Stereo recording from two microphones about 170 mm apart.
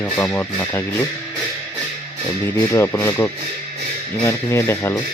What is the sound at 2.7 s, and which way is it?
Speech, 15° left (ahead or behind).